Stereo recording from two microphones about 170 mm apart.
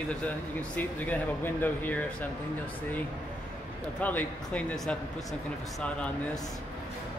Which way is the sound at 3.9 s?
10° left (ahead or behind).